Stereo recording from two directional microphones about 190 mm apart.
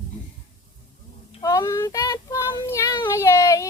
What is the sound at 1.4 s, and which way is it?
Child singing, 20° left (ahead or behind).